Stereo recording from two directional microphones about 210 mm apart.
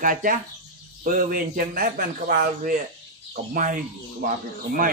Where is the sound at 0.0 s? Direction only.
40° right (ahead or behind).